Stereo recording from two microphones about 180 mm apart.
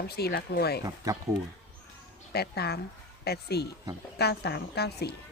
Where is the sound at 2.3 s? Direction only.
65° left (ahead or behind).